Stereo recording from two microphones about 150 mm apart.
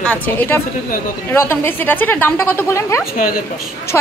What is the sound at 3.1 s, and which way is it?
Speech, 75° left (ahead or behind).